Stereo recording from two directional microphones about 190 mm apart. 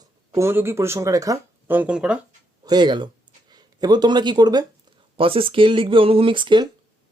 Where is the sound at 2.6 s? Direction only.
20° right (ahead or behind).